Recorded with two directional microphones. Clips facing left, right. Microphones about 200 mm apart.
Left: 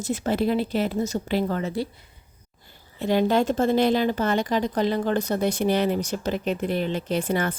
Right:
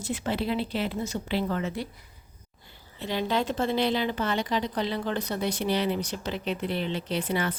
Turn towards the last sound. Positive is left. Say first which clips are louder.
# left 4 dB
turn(degrees=45)  # may be behind; listen again after turning